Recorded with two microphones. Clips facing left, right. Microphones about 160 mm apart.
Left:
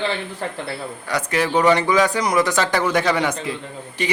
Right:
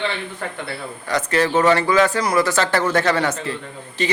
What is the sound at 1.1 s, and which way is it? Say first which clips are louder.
A man's voice: right 2 dB; 10° left (ahead or behind).